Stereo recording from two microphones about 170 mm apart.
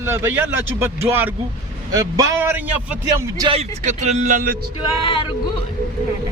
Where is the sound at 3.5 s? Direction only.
40° right (ahead or behind).